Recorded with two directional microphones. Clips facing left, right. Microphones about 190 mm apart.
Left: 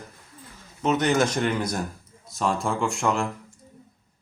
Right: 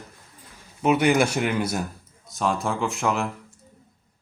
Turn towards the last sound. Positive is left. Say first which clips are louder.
# even
turn(degrees=-5)  # may be behind; listen again after turning